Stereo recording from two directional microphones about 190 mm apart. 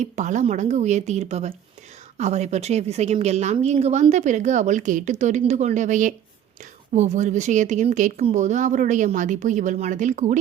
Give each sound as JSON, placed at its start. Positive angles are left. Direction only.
{"t": 0.0, "sound": "a woman's voice", "side_deg": -40}